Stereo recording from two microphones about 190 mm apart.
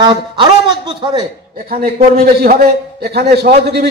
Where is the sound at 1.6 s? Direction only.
50° right (ahead or behind).